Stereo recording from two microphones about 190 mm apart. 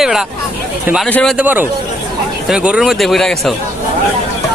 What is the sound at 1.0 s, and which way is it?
Speech, 5° left (ahead or behind).